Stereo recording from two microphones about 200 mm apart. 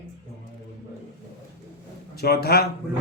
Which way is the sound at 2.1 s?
50° left (ahead or behind).